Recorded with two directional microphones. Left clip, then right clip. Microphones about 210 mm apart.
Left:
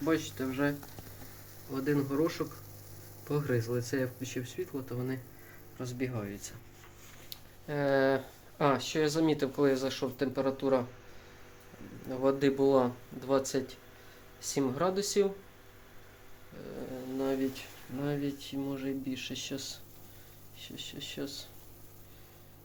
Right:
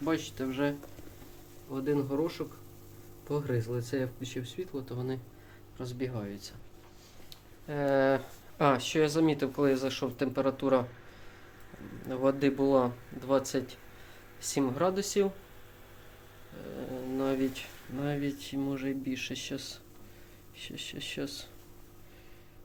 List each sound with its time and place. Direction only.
0.0 s speech: 5° right (ahead or behind)
12.0 s speech: 15° right (ahead or behind)
17.2 s speech: 20° right (ahead or behind)